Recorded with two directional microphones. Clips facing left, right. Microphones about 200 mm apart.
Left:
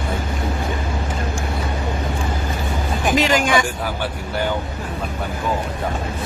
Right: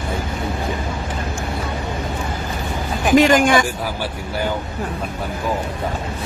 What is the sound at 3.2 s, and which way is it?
Speech, 50° right (ahead or behind).